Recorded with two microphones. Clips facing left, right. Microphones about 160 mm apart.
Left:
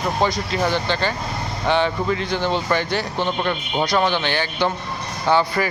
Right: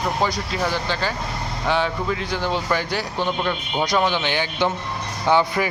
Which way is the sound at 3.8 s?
15° right (ahead or behind).